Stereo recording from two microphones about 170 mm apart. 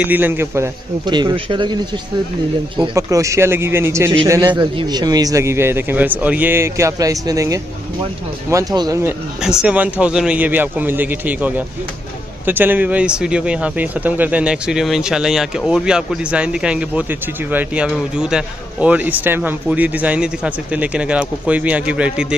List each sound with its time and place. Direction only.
0.0 s speech: 10° right (ahead or behind)
1.0 s a man's voice: 25° right (ahead or behind)
2.9 s a man's voice: 20° right (ahead or behind)
9.6 s speech: 5° right (ahead or behind)